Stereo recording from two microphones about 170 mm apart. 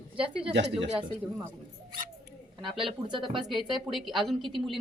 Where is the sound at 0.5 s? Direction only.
90° right.